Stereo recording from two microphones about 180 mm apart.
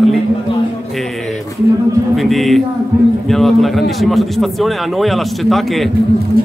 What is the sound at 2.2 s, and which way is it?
A man's voice, centre (ahead or behind).